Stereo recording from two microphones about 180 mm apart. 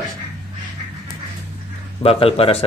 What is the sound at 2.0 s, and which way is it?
Speech, 30° left (ahead or behind).